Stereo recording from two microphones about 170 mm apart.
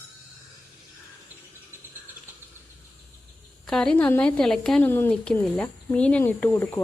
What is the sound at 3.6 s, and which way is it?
A woman's voice, 5° left (ahead or behind).